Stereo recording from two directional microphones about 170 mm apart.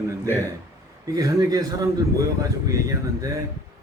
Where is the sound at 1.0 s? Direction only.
20° right (ahead or behind).